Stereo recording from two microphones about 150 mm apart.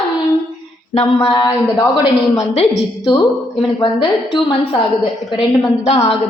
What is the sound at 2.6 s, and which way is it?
Speech, 35° left (ahead or behind).